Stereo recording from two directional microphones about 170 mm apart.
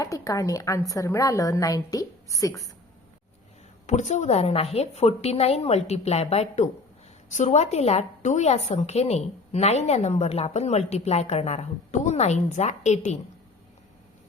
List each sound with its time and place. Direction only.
0.0 s a woman's voice: 20° left (ahead or behind)
3.8 s a woman's voice: 45° left (ahead or behind)